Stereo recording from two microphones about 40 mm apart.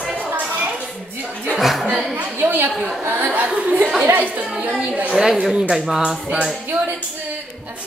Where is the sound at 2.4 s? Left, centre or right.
Right.